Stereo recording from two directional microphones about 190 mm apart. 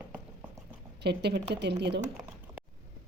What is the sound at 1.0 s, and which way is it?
Speech, 60° right (ahead or behind).